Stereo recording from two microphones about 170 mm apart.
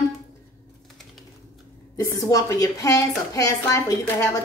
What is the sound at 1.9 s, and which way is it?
A woman's voice, 20° left (ahead or behind).